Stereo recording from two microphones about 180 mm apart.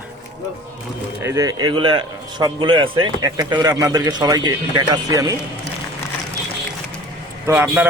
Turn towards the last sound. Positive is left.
turn(degrees=-10)  # may be behind; listen again after turning